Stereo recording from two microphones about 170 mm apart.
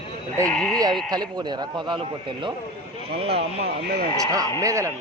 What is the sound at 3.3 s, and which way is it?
Speech, 75° right (ahead or behind).